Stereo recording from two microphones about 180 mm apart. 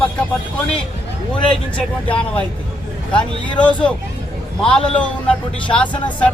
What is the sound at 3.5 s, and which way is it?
Speech, 5° left (ahead or behind).